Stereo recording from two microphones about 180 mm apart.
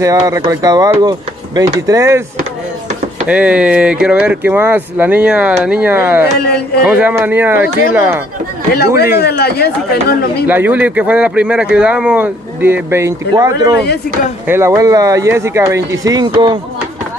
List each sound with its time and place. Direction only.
0.0 s speech: 15° right (ahead or behind)
3.3 s speech: 5° right (ahead or behind)
9.2 s speech: 60° left (ahead or behind)
10.4 s speech: 10° right (ahead or behind)